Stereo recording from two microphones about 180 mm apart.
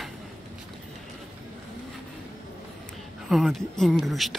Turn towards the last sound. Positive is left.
turn(degrees=0)  # may be behind; listen again after turning